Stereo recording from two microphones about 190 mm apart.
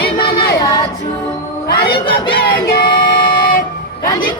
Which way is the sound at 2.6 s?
55° left (ahead or behind).